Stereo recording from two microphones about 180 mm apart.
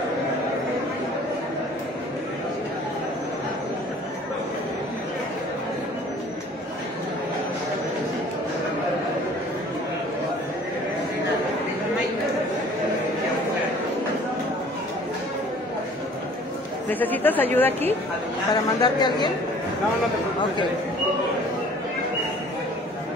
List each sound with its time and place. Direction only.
17.0 s speech: 10° left (ahead or behind)
18.5 s speech: 25° left (ahead or behind)